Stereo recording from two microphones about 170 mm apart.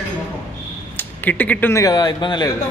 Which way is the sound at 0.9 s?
10° left (ahead or behind).